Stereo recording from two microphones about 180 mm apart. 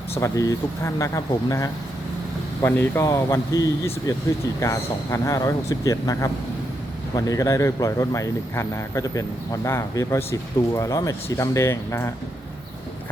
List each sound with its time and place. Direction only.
0.2 s a man's voice: 15° left (ahead or behind)